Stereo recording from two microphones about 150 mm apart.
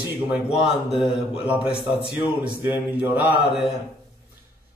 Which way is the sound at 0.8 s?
5° right (ahead or behind).